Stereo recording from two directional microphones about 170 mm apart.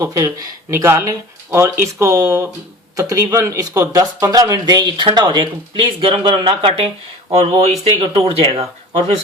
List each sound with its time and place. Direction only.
0.0 s speech: 20° right (ahead or behind); by 8.6 s 35° right (ahead or behind)